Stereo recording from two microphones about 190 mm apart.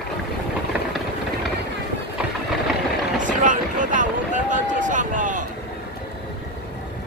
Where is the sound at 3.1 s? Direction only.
45° right (ahead or behind).